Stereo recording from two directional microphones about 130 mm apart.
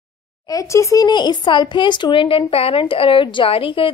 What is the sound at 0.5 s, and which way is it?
Speech, 25° left (ahead or behind).